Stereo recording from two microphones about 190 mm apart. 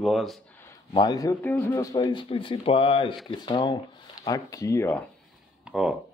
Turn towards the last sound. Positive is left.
turn(degrees=-5)  # may be behind; listen again after turning